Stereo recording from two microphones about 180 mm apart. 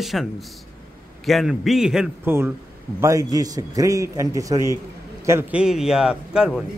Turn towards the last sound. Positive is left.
turn(degrees=-5)  # may be behind; listen again after turning